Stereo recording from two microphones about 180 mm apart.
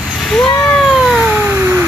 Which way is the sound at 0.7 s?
Centre (ahead or behind).